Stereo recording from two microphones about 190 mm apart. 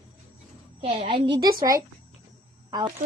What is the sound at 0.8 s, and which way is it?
A woman's voice, 30° right (ahead or behind).